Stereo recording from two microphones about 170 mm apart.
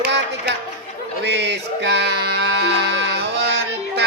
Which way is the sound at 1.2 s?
90° right.